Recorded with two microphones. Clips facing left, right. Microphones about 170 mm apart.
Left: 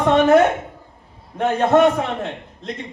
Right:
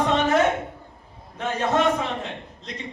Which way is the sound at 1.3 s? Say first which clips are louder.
Left 7 dB; 55° left (ahead or behind).